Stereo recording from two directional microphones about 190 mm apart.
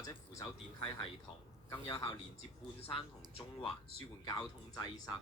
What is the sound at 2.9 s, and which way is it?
Speech, 25° left (ahead or behind).